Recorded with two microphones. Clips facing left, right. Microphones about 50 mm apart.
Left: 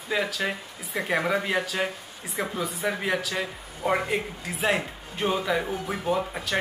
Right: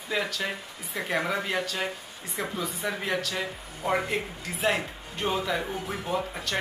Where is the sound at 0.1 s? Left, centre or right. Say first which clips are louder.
Left 3 dB; centre.